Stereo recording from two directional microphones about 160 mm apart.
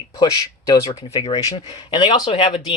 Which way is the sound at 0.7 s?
20° left (ahead or behind).